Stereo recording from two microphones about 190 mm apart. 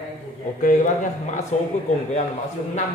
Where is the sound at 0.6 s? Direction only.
40° left (ahead or behind).